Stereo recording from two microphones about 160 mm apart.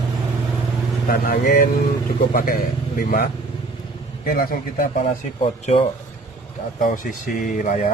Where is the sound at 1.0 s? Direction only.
60° left (ahead or behind).